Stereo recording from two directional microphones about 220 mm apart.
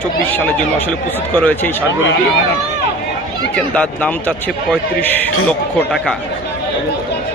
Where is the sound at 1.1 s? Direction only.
10° left (ahead or behind).